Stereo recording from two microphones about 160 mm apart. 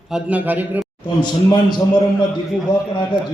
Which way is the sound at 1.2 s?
25° left (ahead or behind).